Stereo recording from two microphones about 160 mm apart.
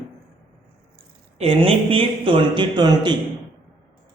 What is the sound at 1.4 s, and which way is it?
Speech, 35° right (ahead or behind).